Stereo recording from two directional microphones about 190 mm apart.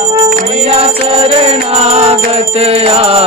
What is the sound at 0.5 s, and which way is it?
Music, 30° right (ahead or behind).